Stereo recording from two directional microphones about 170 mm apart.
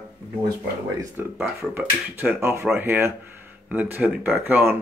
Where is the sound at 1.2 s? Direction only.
10° right (ahead or behind).